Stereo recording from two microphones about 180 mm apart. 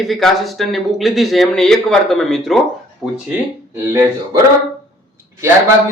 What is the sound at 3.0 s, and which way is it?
Speech, 20° left (ahead or behind).